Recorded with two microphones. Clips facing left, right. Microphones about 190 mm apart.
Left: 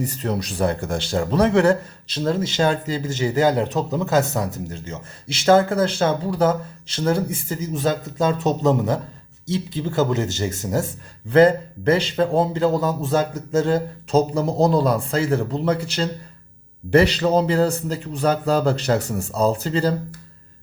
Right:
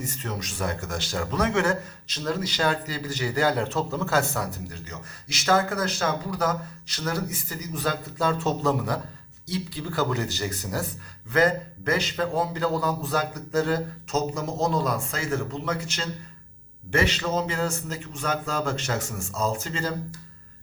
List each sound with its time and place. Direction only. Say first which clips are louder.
0.0 s speech: left 8 dB; 35° left (ahead or behind)